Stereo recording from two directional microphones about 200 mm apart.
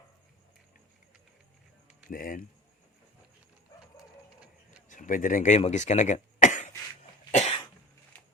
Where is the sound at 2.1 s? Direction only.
45° left (ahead or behind).